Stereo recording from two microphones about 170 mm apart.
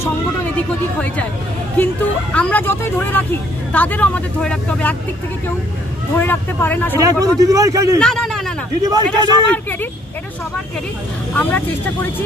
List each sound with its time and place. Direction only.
2.3 s speech: 10° left (ahead or behind)
6.1 s speech: 10° left (ahead or behind)
7.0 s a man's voice: 20° right (ahead or behind)
8.0 s a sound: 5° left (ahead or behind)
8.8 s a man's voice: 25° right (ahead or behind)
9.5 s speech: 10° left (ahead or behind)
11.3 s speech: 10° left (ahead or behind)